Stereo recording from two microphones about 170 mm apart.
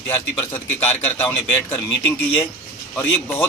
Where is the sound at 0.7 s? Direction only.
10° left (ahead or behind).